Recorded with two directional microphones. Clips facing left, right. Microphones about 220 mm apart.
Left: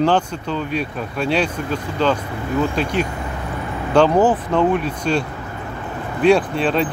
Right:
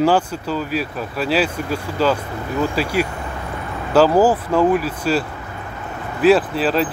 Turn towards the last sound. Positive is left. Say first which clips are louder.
# even
turn(degrees=-5)  # may be behind; listen again after turning